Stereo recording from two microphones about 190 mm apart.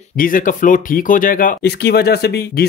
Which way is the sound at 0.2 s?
45° left (ahead or behind).